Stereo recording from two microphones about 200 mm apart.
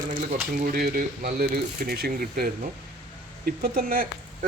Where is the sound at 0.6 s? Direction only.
45° right (ahead or behind).